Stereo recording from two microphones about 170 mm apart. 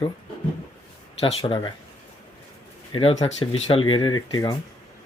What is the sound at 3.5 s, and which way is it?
Speech, 35° left (ahead or behind).